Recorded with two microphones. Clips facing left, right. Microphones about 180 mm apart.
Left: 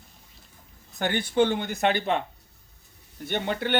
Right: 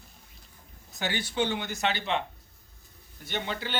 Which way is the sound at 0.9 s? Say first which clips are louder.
Left 7 dB; 55° left (ahead or behind).